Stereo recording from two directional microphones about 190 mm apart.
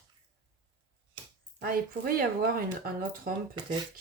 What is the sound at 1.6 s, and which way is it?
A woman's voice, 50° right (ahead or behind).